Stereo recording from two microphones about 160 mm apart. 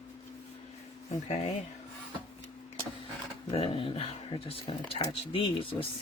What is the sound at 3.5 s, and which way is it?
Speech, 35° left (ahead or behind).